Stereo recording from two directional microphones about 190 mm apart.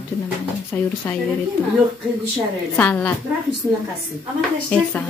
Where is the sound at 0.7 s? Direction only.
10° left (ahead or behind).